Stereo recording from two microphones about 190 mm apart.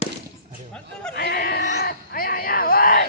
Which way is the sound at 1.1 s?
55° left (ahead or behind).